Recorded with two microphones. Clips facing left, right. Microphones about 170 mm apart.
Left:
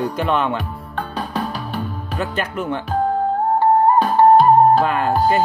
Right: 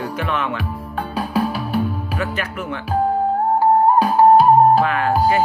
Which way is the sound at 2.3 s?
30° left (ahead or behind).